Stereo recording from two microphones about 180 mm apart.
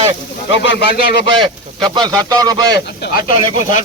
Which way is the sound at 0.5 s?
75° left (ahead or behind).